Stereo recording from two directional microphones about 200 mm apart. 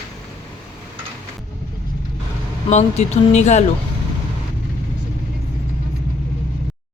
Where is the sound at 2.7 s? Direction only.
35° left (ahead or behind).